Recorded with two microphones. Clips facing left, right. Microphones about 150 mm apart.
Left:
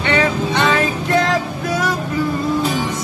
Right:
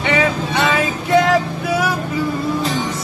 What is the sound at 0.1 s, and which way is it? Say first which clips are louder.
Vehicle: left 1 dB; 5° right (ahead or behind).